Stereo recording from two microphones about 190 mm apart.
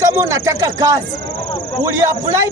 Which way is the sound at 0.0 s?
15° right (ahead or behind).